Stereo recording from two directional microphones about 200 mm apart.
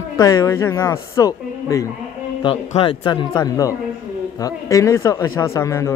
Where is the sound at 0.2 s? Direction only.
15° left (ahead or behind).